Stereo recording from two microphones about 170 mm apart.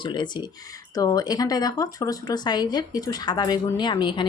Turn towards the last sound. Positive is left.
turn(degrees=30)  # may be behind; listen again after turning